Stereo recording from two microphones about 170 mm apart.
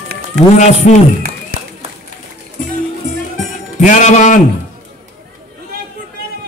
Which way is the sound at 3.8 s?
45° left (ahead or behind).